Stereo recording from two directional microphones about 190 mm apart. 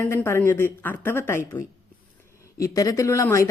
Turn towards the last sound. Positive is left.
turn(degrees=15)  # may be behind; listen again after turning